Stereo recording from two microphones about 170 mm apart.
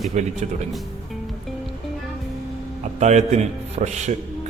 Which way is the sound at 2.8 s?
45° right (ahead or behind).